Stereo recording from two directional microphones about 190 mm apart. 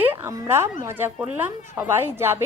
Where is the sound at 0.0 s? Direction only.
10° right (ahead or behind).